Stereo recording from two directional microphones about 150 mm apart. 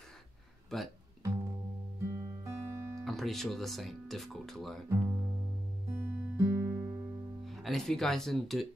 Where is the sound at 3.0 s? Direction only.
Centre (ahead or behind).